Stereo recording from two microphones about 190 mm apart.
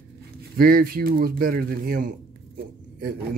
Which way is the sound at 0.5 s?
50° right (ahead or behind).